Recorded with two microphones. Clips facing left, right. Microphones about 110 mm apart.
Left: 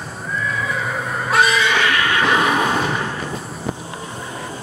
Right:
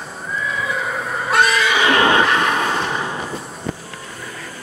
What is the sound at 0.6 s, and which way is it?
Neigh, centre (ahead or behind).